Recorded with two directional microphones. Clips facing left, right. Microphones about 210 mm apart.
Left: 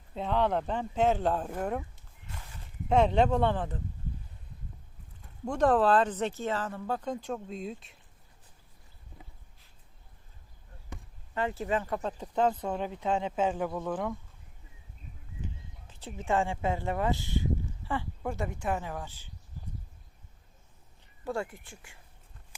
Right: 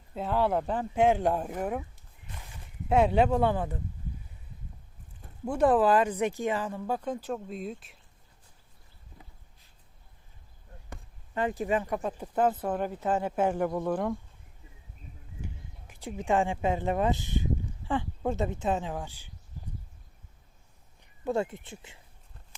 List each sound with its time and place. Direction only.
0.1 s speech: 5° right (ahead or behind)
2.9 s speech: 5° right (ahead or behind)
5.5 s speech: 10° right (ahead or behind)
11.3 s speech: 15° right (ahead or behind)
15.9 s speech: 10° right (ahead or behind)
21.0 s speech: 20° right (ahead or behind)